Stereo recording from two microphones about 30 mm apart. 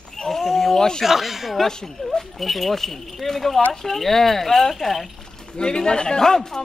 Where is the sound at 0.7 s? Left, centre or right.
Left.